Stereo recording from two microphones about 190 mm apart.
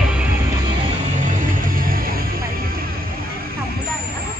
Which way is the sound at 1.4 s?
45° right (ahead or behind).